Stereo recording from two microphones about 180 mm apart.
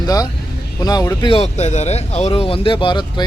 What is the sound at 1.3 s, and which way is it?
Speech, 35° left (ahead or behind).